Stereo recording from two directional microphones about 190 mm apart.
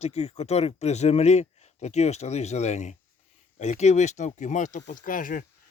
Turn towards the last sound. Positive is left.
turn(degrees=45)  # may be behind; listen again after turning